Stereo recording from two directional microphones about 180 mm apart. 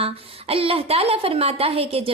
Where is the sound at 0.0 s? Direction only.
35° right (ahead or behind).